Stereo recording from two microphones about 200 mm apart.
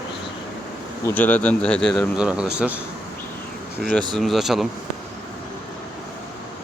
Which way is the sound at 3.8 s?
5° left (ahead or behind).